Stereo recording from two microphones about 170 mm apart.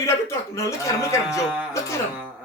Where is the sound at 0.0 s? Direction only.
15° left (ahead or behind).